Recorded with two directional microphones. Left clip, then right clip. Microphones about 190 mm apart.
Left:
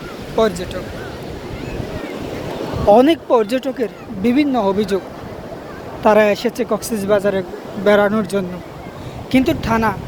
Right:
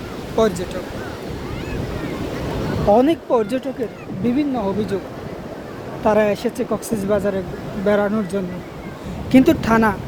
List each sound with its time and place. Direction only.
0.3 s speech: 5° right (ahead or behind)
2.9 s speech: 5° left (ahead or behind)
3.8 s speech: 20° left (ahead or behind)
6.0 s speech: centre (ahead or behind)
9.4 s a woman's voice: 25° right (ahead or behind)